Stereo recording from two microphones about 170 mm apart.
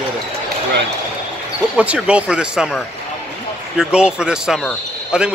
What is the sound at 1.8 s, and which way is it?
Speech, 5° right (ahead or behind).